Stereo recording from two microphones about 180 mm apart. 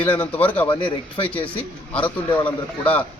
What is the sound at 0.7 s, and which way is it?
Speech, 25° left (ahead or behind).